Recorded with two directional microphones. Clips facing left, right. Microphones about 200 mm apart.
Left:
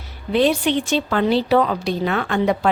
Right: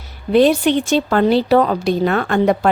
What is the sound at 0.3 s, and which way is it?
A woman's voice, 45° right (ahead or behind).